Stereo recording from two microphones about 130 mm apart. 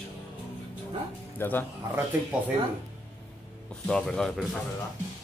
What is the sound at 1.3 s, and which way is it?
Speech, 15° left (ahead or behind).